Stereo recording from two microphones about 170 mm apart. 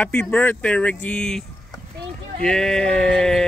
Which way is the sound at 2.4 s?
5° left (ahead or behind).